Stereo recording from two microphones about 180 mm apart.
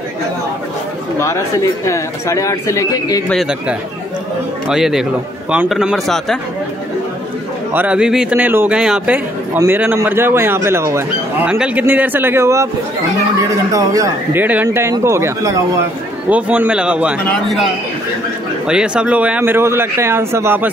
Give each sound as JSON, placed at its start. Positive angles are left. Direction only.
{"t": 1.9, "sound": "speech", "side_deg": 15}
{"t": 3.3, "sound": "speech", "side_deg": 0}
{"t": 7.7, "sound": "speech", "side_deg": -10}
{"t": 13.7, "sound": "speech", "side_deg": -20}
{"t": 18.7, "sound": "speech", "side_deg": -5}